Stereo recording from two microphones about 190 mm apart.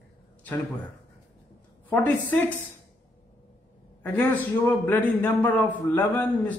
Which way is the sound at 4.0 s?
10° left (ahead or behind).